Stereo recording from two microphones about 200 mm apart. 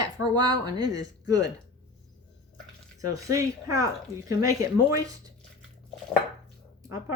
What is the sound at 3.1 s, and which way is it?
Speech, 15° right (ahead or behind).